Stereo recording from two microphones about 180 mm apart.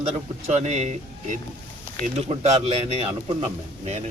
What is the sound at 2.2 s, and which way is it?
Speech, 35° right (ahead or behind).